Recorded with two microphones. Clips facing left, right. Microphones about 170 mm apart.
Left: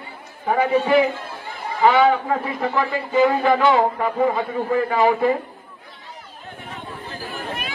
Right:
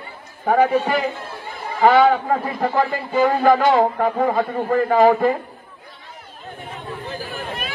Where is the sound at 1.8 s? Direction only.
40° right (ahead or behind); by 5.4 s 55° right (ahead or behind).